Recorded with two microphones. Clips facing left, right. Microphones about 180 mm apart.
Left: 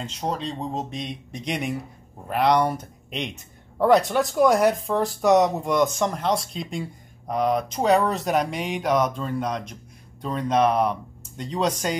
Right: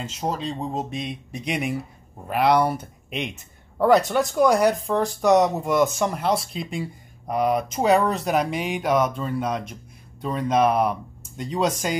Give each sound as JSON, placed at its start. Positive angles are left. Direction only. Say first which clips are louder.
{"t": 0.0, "sound": "speech", "louder": "right 1 dB", "side_deg": -5}